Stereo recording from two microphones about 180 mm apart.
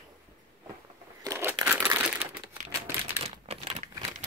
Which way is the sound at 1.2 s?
15° right (ahead or behind).